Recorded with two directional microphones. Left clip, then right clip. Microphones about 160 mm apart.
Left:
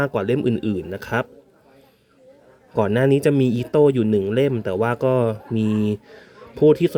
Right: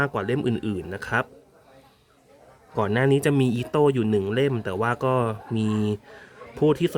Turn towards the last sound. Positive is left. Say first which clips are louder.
# left 6 dB
turn(degrees=10)  # may be behind; listen again after turning